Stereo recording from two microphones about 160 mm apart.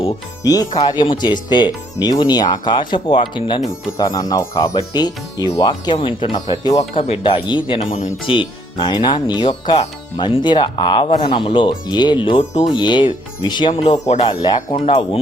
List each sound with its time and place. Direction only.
0.4 s speech: 25° left (ahead or behind)
14.1 s speech: 45° left (ahead or behind)